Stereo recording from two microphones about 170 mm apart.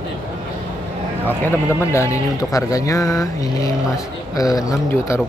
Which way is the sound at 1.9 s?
15° left (ahead or behind).